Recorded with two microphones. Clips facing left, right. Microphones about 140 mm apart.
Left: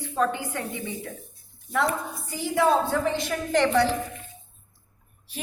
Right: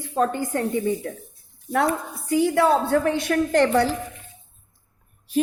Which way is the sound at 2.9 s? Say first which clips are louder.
Right 5 dB; 60° right (ahead or behind).